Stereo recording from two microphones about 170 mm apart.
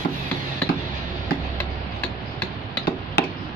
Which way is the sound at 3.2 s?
70° left (ahead or behind).